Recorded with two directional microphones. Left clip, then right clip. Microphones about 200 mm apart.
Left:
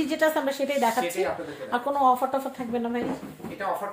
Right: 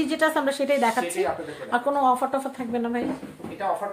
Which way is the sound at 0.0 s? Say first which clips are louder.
Right 1 dB; 15° right (ahead or behind).